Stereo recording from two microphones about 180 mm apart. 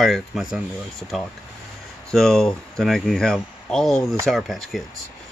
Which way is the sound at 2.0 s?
5° left (ahead or behind).